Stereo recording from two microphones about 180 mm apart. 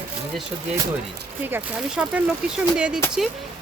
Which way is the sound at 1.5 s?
5° right (ahead or behind).